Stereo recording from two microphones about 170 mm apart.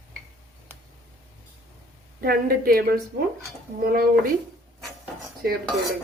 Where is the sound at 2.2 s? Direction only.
60° right (ahead or behind).